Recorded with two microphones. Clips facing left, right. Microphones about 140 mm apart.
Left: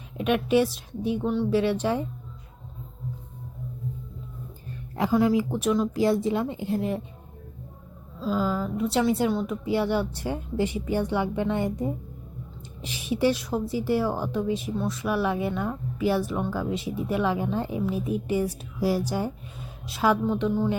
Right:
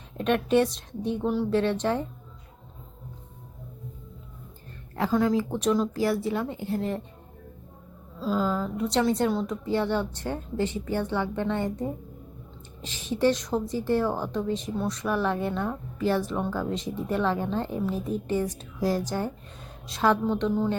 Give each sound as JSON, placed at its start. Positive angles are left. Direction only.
{"t": 0.2, "sound": "a woman's voice", "side_deg": 10}
{"t": 4.9, "sound": "a woman's voice", "side_deg": 15}
{"t": 5.9, "sound": "a woman's voice", "side_deg": 20}
{"t": 8.2, "sound": "a woman's voice", "side_deg": 0}